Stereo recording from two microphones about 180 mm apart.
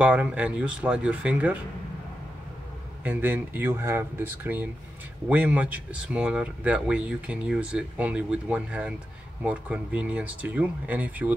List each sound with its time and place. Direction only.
0.0 s speech: 10° right (ahead or behind)
3.0 s speech: 10° right (ahead or behind)